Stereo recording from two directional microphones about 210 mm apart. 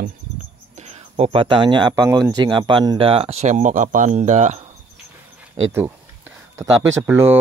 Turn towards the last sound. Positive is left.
turn(degrees=-10)  # may be behind; listen again after turning